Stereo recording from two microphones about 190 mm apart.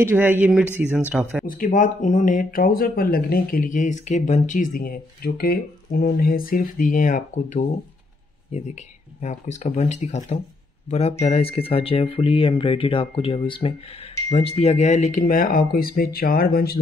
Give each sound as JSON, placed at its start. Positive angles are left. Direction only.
{"t": 0.0, "sound": "speech", "side_deg": -10}
{"t": 1.4, "sound": "speech", "side_deg": 50}